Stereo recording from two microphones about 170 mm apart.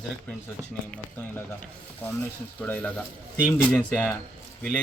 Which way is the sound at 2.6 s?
10° left (ahead or behind).